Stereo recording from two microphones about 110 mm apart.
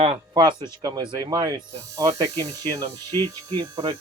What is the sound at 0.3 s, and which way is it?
Speech, 40° right (ahead or behind).